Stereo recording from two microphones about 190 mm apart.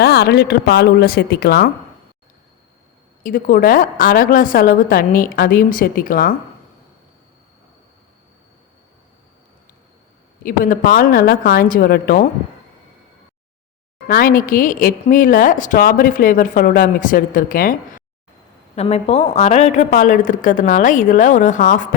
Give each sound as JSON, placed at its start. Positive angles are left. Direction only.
{"t": 0.0, "sound": "a woman's voice", "side_deg": 55}
{"t": 3.2, "sound": "a woman's voice", "side_deg": 45}
{"t": 10.4, "sound": "a woman's voice", "side_deg": 45}
{"t": 14.1, "sound": "a woman's voice", "side_deg": 50}
{"t": 18.8, "sound": "a woman's voice", "side_deg": 35}